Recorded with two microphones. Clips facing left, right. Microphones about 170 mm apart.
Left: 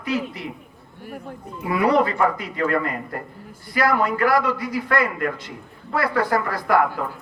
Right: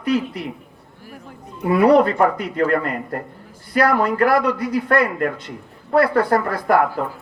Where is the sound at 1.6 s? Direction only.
60° right (ahead or behind).